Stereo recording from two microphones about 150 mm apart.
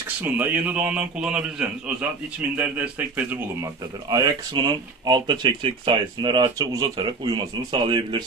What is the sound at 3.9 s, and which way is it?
A man's voice, 25° right (ahead or behind).